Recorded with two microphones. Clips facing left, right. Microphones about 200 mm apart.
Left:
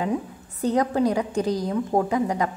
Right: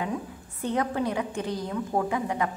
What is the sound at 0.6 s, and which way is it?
A woman's voice, 40° left (ahead or behind).